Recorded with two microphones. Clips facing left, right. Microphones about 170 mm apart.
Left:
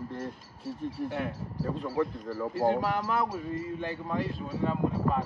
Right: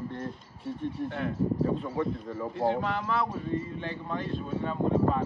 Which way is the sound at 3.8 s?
5° left (ahead or behind).